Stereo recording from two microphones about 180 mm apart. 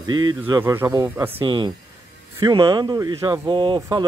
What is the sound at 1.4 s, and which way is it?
Speech, 25° right (ahead or behind).